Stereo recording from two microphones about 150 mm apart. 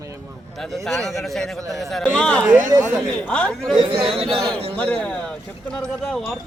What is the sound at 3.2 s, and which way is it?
Speech, 5° left (ahead or behind).